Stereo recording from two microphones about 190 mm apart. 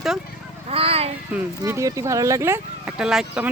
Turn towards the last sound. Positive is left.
turn(degrees=-5)  # may be behind; listen again after turning